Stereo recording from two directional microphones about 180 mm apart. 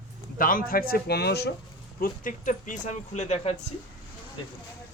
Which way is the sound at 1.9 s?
50° left (ahead or behind).